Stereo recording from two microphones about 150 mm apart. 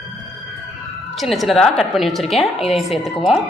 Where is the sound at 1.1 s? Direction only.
Centre (ahead or behind).